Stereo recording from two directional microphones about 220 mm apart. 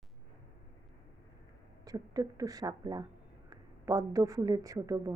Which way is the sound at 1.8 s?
15° right (ahead or behind).